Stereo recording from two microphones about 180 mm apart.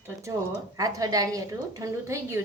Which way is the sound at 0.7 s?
20° right (ahead or behind).